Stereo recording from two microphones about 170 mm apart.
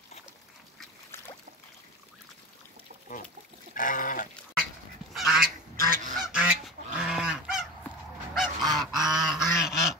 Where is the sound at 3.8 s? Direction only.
50° left (ahead or behind).